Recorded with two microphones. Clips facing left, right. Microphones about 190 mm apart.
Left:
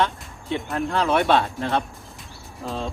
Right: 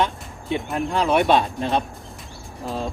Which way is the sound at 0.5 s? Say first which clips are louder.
Right 1 dB; 15° right (ahead or behind).